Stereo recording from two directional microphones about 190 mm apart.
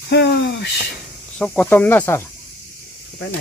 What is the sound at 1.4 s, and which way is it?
Speech, 5° left (ahead or behind).